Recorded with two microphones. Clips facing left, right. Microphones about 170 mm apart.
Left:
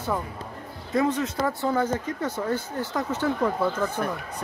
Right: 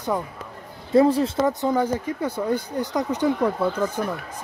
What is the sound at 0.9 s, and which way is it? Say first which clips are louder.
Speech: right 7 dB; 30° right (ahead or behind).